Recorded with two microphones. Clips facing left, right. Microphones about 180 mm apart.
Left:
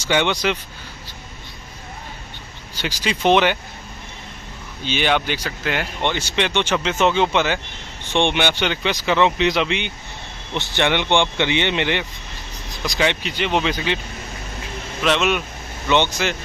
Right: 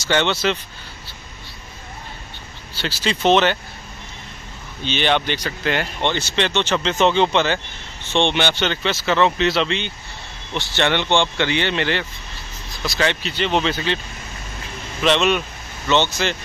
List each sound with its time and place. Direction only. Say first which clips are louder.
0.0 s speech: even; 10° left (ahead or behind)
2.7 s speech: right 1 dB; 15° left (ahead or behind)
4.8 s speech: even; 10° left (ahead or behind)
15.0 s speech: right 2 dB; 5° left (ahead or behind)